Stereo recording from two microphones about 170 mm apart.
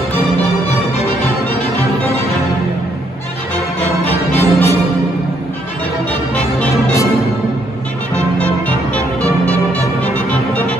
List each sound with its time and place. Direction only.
4.4 s music: 15° left (ahead or behind)
6.3 s music: 10° left (ahead or behind)
9.2 s music: 20° right (ahead or behind)